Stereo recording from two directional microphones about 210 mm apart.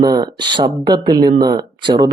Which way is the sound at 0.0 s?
20° right (ahead or behind).